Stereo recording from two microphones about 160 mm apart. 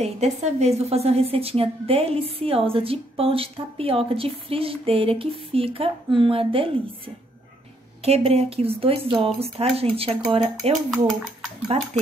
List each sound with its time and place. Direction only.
0.0 s a woman's voice: 45° right (ahead or behind)
8.0 s a woman's voice: 40° right (ahead or behind)
10.9 s speech: centre (ahead or behind)
11.6 s a woman's voice: 40° right (ahead or behind)